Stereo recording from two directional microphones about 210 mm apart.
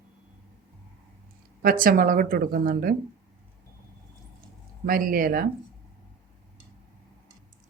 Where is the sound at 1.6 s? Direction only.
40° right (ahead or behind).